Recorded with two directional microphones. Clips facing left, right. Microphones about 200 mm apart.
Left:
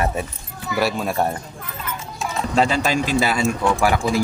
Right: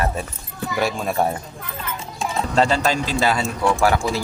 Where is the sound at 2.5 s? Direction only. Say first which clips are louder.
Even; 10° left (ahead or behind).